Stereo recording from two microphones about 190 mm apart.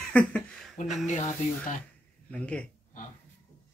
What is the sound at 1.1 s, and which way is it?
Speech, 40° left (ahead or behind).